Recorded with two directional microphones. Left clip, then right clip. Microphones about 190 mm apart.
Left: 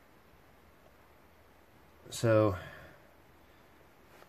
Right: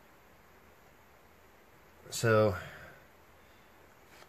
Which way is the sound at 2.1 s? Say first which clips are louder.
Even; 25° left (ahead or behind).